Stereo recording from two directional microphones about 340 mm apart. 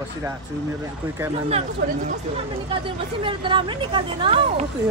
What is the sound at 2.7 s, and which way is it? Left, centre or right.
A woman's voice, centre.